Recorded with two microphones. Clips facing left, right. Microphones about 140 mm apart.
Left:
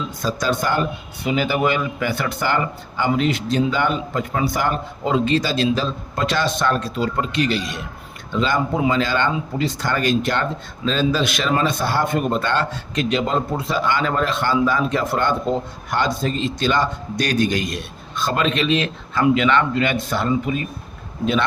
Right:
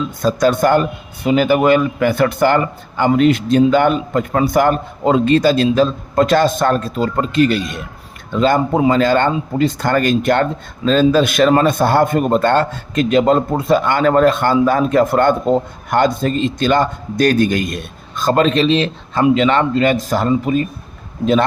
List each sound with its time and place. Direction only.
0.2 s a man's voice: 50° right (ahead or behind)